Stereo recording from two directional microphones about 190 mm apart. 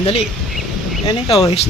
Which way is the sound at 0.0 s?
30° left (ahead or behind).